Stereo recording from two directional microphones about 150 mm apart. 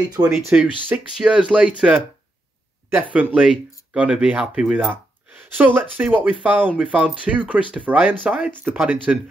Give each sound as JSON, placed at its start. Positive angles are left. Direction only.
{"t": 0.2, "sound": "speech", "side_deg": -25}
{"t": 0.8, "sound": "speech", "side_deg": -5}